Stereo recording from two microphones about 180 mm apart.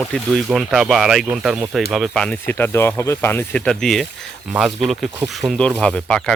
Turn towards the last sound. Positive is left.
turn(degrees=5)  # may be behind; listen again after turning